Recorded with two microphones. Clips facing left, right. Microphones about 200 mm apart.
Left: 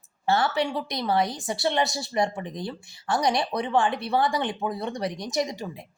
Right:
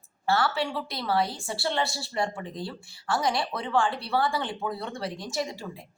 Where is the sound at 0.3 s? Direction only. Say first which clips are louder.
Left 2 dB; 20° left (ahead or behind).